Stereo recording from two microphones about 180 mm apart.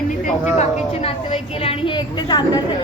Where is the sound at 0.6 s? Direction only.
35° left (ahead or behind).